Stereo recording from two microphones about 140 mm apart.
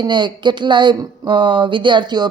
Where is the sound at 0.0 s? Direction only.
35° right (ahead or behind).